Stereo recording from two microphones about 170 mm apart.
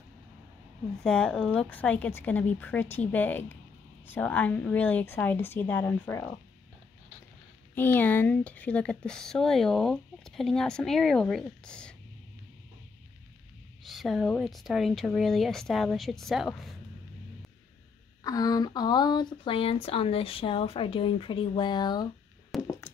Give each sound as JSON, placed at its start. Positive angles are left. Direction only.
{"t": 1.0, "sound": "a woman's voice", "side_deg": 5}
{"t": 7.7, "sound": "speech", "side_deg": 10}
{"t": 13.8, "sound": "speech", "side_deg": 0}
{"t": 18.2, "sound": "speech", "side_deg": 20}
{"t": 22.7, "sound": "a sound", "side_deg": 15}